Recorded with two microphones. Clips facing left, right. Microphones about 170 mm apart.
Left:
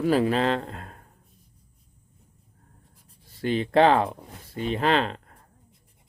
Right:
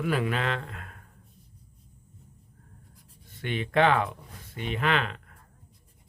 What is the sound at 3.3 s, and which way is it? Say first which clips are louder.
Speech: left 7 dB; 35° left (ahead or behind).